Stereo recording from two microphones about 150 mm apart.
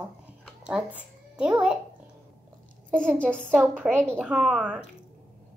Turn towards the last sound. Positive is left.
turn(degrees=0)  # may be behind; listen again after turning